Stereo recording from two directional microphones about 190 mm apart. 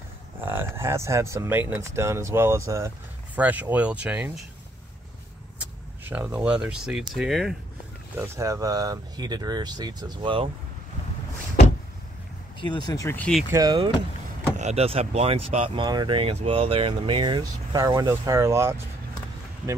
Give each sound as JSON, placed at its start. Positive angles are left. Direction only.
{"t": 0.4, "sound": "speech", "side_deg": -10}
{"t": 6.0, "sound": "speech", "side_deg": -10}
{"t": 8.4, "sound": "speech", "side_deg": -15}
{"t": 12.7, "sound": "speech", "side_deg": 20}
{"t": 13.5, "sound": "speech", "side_deg": -20}
{"t": 14.6, "sound": "speech", "side_deg": -35}